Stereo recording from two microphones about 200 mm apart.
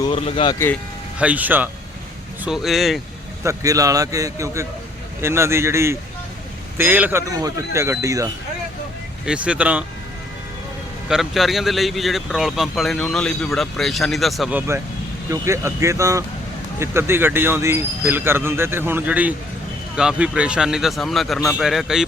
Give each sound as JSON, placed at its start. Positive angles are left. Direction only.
{"t": 0.0, "sound": "speech", "side_deg": 25}
{"t": 1.2, "sound": "speech", "side_deg": -5}
{"t": 3.4, "sound": "speech", "side_deg": -15}
{"t": 9.2, "sound": "speech", "side_deg": -5}
{"t": 11.1, "sound": "speech", "side_deg": 0}
{"t": 15.3, "sound": "speech", "side_deg": -15}